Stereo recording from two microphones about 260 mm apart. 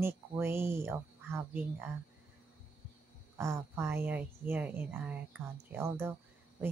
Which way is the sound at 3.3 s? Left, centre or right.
Centre.